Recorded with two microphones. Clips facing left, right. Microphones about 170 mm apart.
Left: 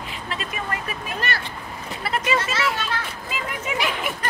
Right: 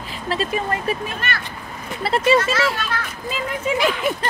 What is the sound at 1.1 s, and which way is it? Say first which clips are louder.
Speech: even; 35° left (ahead or behind).